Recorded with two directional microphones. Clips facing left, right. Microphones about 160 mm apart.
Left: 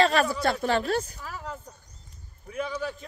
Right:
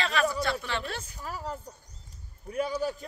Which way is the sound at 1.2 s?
35° right (ahead or behind).